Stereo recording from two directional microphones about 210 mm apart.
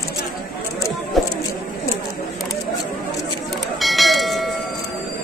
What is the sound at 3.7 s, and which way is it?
Bell, centre (ahead or behind).